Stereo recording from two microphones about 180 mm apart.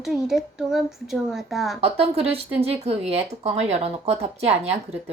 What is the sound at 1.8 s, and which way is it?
Speech, 35° right (ahead or behind).